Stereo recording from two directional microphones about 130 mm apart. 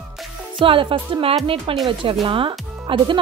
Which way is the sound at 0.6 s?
40° right (ahead or behind).